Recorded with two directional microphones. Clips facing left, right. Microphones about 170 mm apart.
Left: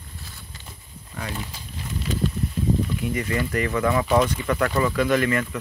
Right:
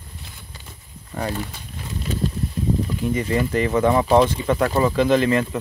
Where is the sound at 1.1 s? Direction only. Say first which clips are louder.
Right 7 dB; 40° right (ahead or behind).